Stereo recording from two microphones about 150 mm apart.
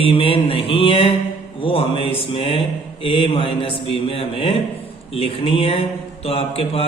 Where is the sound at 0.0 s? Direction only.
40° left (ahead or behind).